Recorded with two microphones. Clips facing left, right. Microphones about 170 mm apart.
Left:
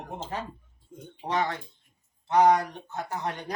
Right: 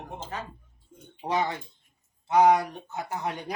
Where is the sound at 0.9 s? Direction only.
90° left.